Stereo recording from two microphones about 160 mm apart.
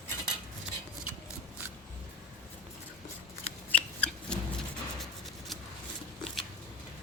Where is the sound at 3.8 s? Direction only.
10° left (ahead or behind).